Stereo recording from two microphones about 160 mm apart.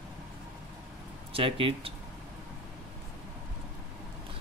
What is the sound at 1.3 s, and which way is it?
Speech, 35° right (ahead or behind).